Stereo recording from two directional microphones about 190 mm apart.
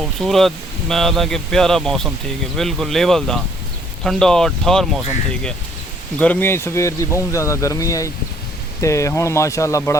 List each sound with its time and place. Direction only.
0.0 s speech: centre (ahead or behind)